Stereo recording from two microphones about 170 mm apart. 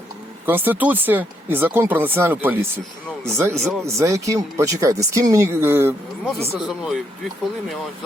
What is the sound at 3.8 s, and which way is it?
Speech, 15° right (ahead or behind).